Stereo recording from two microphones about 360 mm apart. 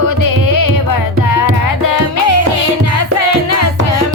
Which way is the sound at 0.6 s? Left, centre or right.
Left.